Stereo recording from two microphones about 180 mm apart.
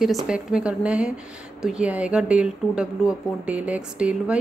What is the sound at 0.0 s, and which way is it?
A woman's voice, centre (ahead or behind).